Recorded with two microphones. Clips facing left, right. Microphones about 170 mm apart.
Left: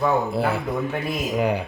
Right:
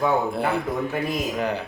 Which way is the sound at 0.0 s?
5° left (ahead or behind).